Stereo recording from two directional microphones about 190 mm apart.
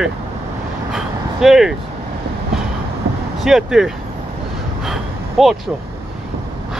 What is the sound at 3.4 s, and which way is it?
Speech, centre (ahead or behind).